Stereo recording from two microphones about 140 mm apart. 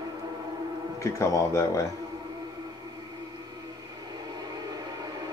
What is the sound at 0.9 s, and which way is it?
Speech, 20° left (ahead or behind).